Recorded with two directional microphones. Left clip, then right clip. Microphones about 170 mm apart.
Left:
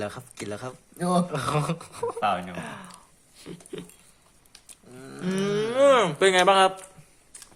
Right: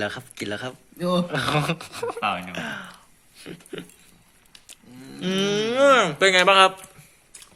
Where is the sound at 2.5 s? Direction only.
Centre (ahead or behind).